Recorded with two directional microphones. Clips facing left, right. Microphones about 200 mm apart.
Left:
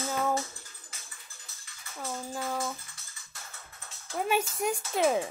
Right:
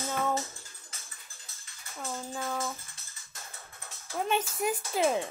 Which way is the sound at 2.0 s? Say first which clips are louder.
Left 1 dB; 10° left (ahead or behind).